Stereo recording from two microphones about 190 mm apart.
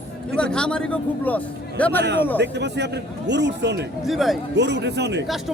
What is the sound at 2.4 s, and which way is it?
A man's voice, 65° right (ahead or behind).